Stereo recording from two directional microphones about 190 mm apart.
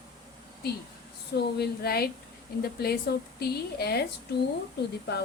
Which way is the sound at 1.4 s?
55° left (ahead or behind).